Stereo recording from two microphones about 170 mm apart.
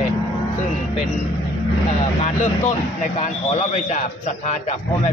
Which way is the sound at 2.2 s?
40° left (ahead or behind).